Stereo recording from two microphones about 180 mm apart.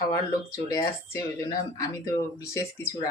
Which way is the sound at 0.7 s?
15° left (ahead or behind).